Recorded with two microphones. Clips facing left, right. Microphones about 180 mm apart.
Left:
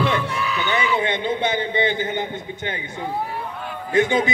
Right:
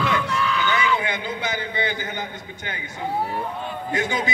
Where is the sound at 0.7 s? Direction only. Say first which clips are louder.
Left 2 dB; 25° left (ahead or behind).